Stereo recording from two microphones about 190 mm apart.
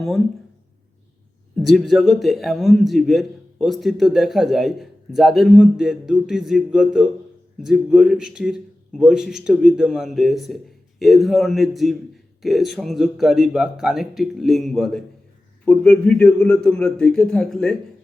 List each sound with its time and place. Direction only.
1.5 s a man's voice: centre (ahead or behind)